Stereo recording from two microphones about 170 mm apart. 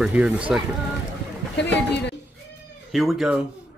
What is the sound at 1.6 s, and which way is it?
Speech, 90° left.